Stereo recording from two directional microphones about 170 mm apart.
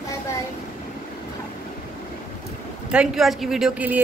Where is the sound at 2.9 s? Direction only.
5° right (ahead or behind).